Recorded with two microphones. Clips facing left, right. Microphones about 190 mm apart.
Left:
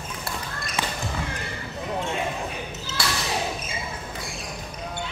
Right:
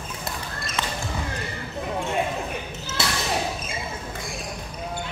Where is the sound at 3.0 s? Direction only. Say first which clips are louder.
Right 1 dB; 20° right (ahead or behind).